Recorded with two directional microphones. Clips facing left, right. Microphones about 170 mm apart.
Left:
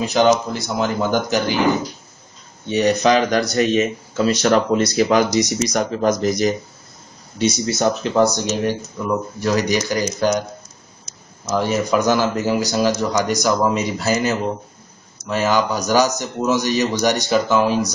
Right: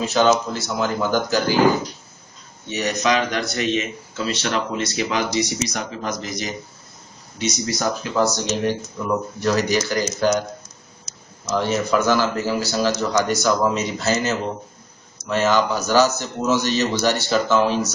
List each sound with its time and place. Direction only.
0.0 s speech: 15° left (ahead or behind)
2.7 s speech: 30° left (ahead or behind)
7.3 s speech: 30° left (ahead or behind); by 10.4 s 15° left (ahead or behind)
11.4 s speech: 10° left (ahead or behind)